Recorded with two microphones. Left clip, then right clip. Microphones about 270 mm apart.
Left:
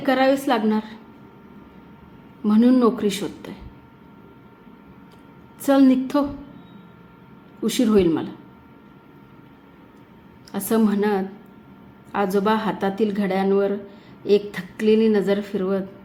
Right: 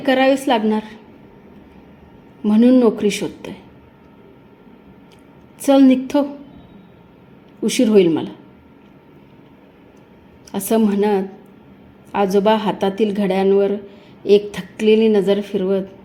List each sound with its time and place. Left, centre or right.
0.0 s speech: centre
2.4 s speech: centre
5.6 s speech: centre
7.7 s speech: centre
10.5 s speech: centre